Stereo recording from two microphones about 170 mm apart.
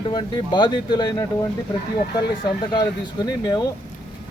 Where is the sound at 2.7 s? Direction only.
20° left (ahead or behind).